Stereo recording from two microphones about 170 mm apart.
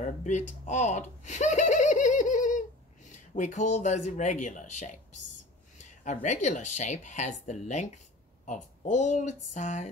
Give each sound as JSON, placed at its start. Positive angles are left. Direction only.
{"t": 0.0, "sound": "speech", "side_deg": 45}
{"t": 6.0, "sound": "speech", "side_deg": 45}